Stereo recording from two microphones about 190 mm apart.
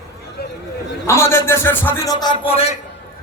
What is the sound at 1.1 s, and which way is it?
A man's voice, 15° left (ahead or behind).